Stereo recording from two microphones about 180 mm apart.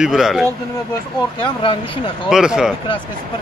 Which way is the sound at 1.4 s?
25° left (ahead or behind).